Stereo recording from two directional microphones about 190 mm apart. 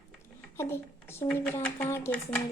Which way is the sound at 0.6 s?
15° left (ahead or behind).